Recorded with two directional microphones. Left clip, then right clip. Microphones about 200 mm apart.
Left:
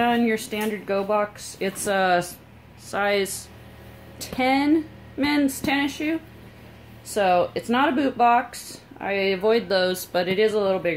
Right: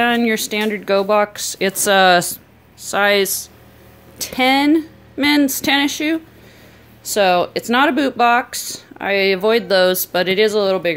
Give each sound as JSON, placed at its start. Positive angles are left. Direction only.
{"t": 0.0, "sound": "speech", "side_deg": -40}
{"t": 7.2, "sound": "speech", "side_deg": -45}